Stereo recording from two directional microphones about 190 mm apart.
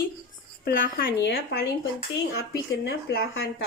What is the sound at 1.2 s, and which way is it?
Speech, 60° left (ahead or behind).